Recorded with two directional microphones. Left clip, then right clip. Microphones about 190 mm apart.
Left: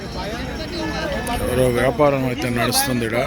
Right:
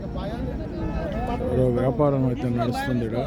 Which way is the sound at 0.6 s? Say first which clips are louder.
Left 6 dB; 40° right (ahead or behind).